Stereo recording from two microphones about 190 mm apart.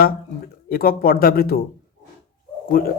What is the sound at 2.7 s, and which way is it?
Speech, 50° left (ahead or behind).